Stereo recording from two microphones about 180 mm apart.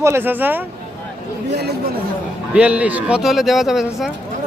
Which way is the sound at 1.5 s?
65° right (ahead or behind).